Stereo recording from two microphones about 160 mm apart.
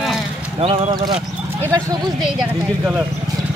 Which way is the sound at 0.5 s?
35° right (ahead or behind).